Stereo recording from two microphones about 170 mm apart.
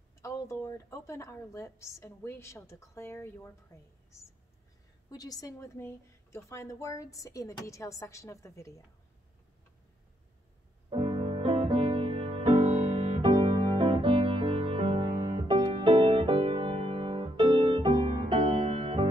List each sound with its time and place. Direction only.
0.2 s a woman's voice: 15° left (ahead or behind)
5.1 s a woman's voice: 20° left (ahead or behind)
10.9 s music: 30° right (ahead or behind)